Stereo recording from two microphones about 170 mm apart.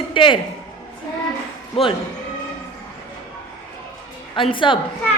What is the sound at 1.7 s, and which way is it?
Speech, 30° left (ahead or behind).